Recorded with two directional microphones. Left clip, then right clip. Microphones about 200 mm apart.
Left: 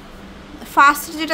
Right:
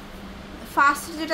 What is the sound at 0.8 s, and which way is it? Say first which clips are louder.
Speech: left 7 dB; 30° left (ahead or behind).